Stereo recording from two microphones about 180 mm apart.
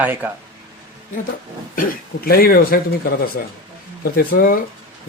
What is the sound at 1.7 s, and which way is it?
Speech, 50° left (ahead or behind).